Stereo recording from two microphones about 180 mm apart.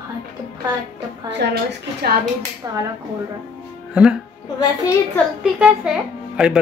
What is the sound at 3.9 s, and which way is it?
Speech, 5° right (ahead or behind).